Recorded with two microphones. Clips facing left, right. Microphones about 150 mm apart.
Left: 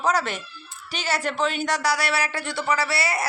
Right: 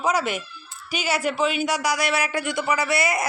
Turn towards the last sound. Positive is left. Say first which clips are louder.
# right 2 dB
turn(degrees=-15)  # may be behind; listen again after turning